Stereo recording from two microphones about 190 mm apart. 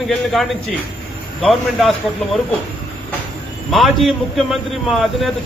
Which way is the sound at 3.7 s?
Centre (ahead or behind).